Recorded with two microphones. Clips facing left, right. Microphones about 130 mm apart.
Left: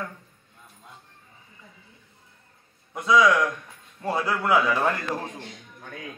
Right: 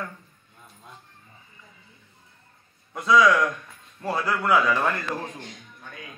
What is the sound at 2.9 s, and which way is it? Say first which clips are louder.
A man's voice: right 1 dB; 20° left (ahead or behind).